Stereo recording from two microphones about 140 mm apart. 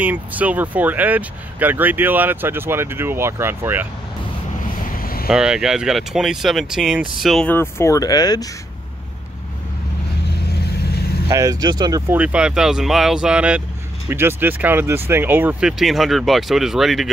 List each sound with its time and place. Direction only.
0.0 s speech: 10° right (ahead or behind)
4.8 s vehicle: 90° left
5.3 s speech: 5° right (ahead or behind)
7.4 s speech: 15° left (ahead or behind)
11.2 s speech: 25° right (ahead or behind)
12.1 s speech: 10° right (ahead or behind)
15.8 s speech: centre (ahead or behind)